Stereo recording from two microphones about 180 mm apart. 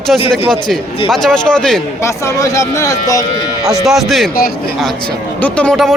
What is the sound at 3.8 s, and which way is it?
Speech, centre (ahead or behind).